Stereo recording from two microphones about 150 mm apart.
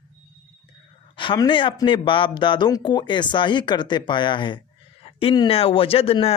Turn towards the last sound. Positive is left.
turn(degrees=40)  # may be behind; listen again after turning